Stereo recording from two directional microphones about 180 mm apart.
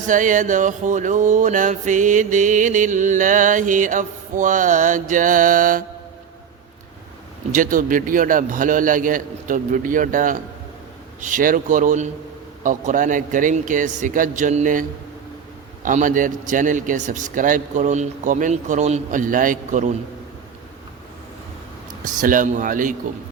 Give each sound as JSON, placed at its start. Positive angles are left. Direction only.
{"t": 0.0, "sound": "music", "side_deg": -45}
{"t": 7.5, "sound": "music", "side_deg": -50}
{"t": 22.2, "sound": "music", "side_deg": -45}